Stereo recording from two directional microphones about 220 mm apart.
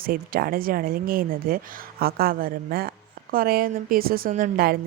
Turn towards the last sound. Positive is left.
turn(degrees=-40)  # may be behind; listen again after turning